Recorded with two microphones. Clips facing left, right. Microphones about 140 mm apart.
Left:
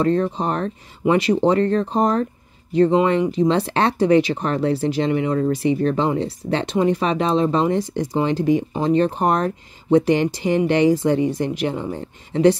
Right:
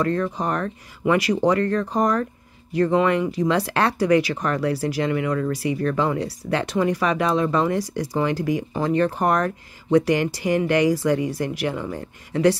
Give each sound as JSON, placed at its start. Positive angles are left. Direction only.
{"t": 0.0, "sound": "speech", "side_deg": 25}